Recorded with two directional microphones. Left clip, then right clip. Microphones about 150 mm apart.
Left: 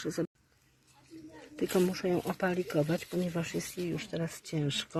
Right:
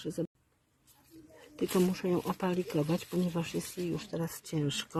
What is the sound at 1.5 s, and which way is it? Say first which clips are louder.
Speech: left 1 dB; 25° right (ahead or behind).